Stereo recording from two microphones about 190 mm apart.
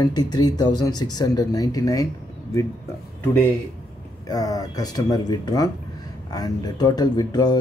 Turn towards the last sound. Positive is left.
turn(degrees=20)  # may be behind; listen again after turning